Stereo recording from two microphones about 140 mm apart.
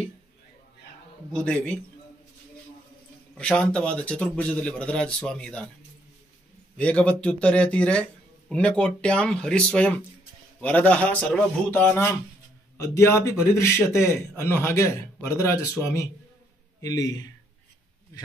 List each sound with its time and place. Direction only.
1.3 s speech: 10° left (ahead or behind)
3.3 s speech: 5° left (ahead or behind)
6.8 s a man's voice: 10° left (ahead or behind); by 17.3 s 25° left (ahead or behind)